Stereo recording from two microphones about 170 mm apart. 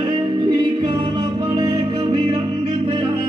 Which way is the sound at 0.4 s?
30° right (ahead or behind).